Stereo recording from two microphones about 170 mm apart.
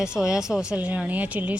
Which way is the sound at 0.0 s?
5° right (ahead or behind).